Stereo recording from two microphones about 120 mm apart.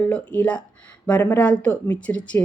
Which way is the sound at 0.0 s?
10° left (ahead or behind).